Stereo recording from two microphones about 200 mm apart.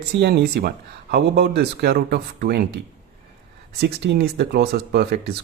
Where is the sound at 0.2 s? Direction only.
50° right (ahead or behind).